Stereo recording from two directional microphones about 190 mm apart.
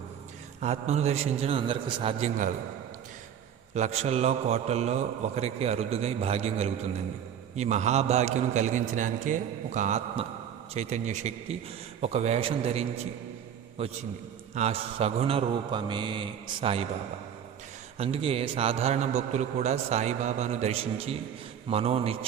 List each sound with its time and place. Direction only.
0.6 s a man's voice: 35° right (ahead or behind)
3.8 s a man's voice: 35° right (ahead or behind)
14.5 s a man's voice: 35° right (ahead or behind)
17.9 s a man's voice: 30° right (ahead or behind)